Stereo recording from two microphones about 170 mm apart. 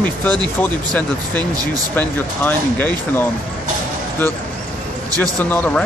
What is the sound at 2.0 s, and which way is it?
Speech, 10° left (ahead or behind).